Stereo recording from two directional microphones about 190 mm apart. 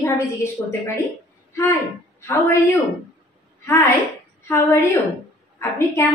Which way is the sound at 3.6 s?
10° left (ahead or behind).